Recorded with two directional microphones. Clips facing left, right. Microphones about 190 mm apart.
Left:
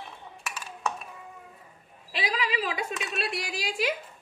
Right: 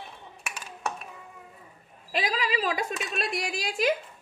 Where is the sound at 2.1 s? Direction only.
45° right (ahead or behind).